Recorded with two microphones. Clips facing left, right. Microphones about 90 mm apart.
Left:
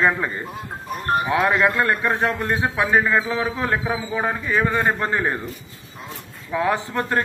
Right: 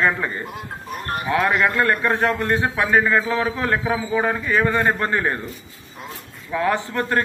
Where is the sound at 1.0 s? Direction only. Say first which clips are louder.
Left 5 dB; 25° left (ahead or behind).